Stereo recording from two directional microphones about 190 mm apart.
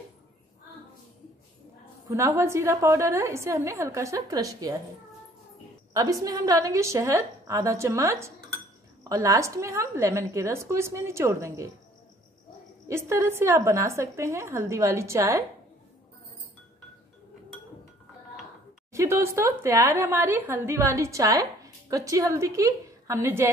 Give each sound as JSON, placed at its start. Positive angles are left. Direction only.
{"t": 2.0, "sound": "a woman's voice", "side_deg": -15}
{"t": 5.9, "sound": "a woman's voice", "side_deg": -20}
{"t": 12.8, "sound": "a woman's voice", "side_deg": -15}
{"t": 18.9, "sound": "a woman's voice", "side_deg": -15}